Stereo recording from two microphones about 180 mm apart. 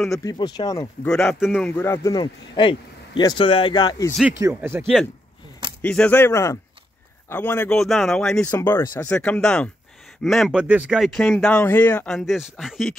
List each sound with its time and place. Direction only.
0.2 s a man's voice: 20° left (ahead or behind)
1.0 s speech: 5° left (ahead or behind)
1.8 s a man's voice: 15° left (ahead or behind)
4.2 s speech: 15° right (ahead or behind)
5.8 s speech: 5° left (ahead or behind)
8.4 s speech: 15° left (ahead or behind); by 12.9 s centre (ahead or behind)